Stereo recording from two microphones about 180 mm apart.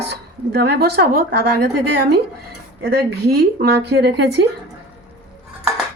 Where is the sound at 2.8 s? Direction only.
60° right (ahead or behind).